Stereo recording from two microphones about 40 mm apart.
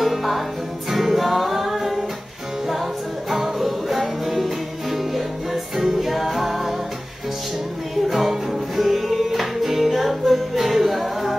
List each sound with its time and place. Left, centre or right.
0.0 s music: centre
3.3 s music: centre
8.1 s music: centre